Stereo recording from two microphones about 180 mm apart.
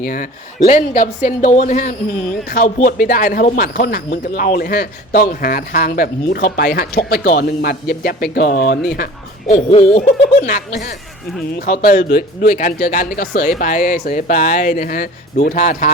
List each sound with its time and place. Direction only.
0.0 s speech: 50° left (ahead or behind)
9.5 s speech: 40° left (ahead or behind)